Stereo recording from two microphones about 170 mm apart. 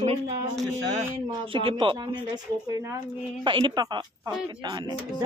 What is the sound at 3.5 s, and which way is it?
Speech, 30° right (ahead or behind).